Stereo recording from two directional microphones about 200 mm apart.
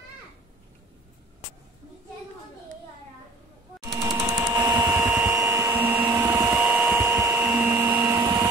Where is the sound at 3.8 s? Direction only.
20° right (ahead or behind).